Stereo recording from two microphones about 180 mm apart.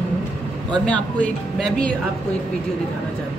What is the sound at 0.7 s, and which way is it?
Speech, 5° left (ahead or behind).